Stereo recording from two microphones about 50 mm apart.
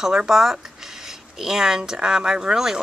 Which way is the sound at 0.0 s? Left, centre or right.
Centre.